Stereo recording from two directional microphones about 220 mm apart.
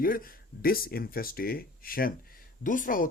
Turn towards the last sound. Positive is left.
turn(degrees=40)  # may be behind; listen again after turning